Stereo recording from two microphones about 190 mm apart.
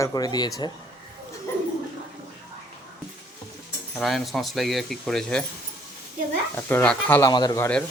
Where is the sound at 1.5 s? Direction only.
15° left (ahead or behind).